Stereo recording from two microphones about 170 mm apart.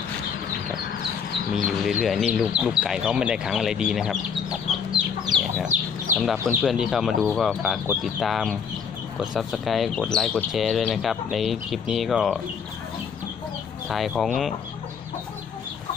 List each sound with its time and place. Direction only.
1.9 s speech: centre (ahead or behind)
5.3 s chicken: 5° left (ahead or behind)
5.7 s chicken: 50° right (ahead or behind)
6.4 s speech: centre (ahead or behind)
13.8 s speech: centre (ahead or behind)